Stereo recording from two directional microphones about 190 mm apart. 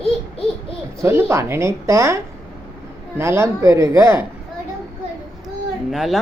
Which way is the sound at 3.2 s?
15° right (ahead or behind).